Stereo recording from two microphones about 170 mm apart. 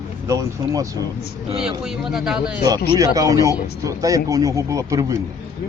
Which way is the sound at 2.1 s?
5° right (ahead or behind).